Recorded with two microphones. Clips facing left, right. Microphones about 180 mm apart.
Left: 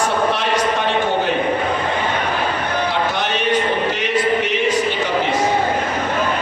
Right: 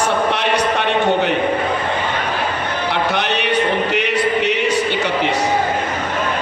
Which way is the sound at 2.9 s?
70° right (ahead or behind).